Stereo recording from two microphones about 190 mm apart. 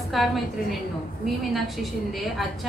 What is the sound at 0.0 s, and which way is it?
A woman's voice, centre (ahead or behind).